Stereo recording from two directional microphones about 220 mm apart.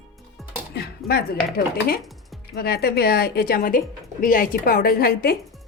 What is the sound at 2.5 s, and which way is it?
A woman's voice, 45° left (ahead or behind).